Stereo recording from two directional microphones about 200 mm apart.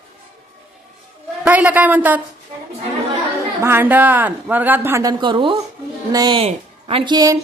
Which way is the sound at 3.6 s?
10° right (ahead or behind).